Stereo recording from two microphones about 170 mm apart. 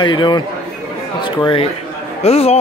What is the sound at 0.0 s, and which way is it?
Speech, 25° left (ahead or behind).